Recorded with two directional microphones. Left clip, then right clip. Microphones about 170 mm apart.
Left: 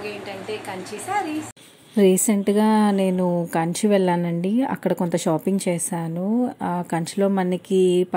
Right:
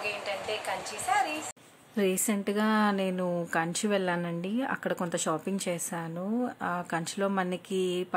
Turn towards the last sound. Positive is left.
turn(degrees=20)  # may be behind; listen again after turning